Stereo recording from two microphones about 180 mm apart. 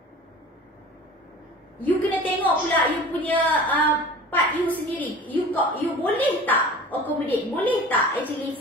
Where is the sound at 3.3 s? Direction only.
10° left (ahead or behind).